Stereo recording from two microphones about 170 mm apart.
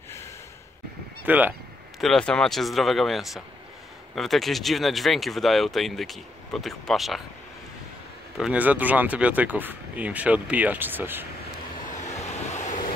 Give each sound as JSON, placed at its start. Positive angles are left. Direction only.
{"t": 1.2, "sound": "speech", "side_deg": -10}
{"t": 2.0, "sound": "speech", "side_deg": 0}
{"t": 8.4, "sound": "speech", "side_deg": -5}
{"t": 12.0, "sound": "vehicle", "side_deg": 40}